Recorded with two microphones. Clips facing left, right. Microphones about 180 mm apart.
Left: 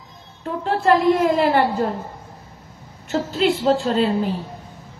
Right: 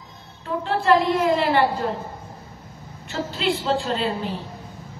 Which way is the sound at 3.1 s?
45° left (ahead or behind).